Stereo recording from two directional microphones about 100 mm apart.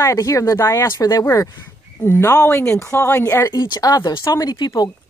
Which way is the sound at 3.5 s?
45° left (ahead or behind).